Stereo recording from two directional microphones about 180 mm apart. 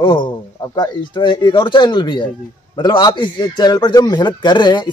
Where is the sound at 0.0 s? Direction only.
25° left (ahead or behind).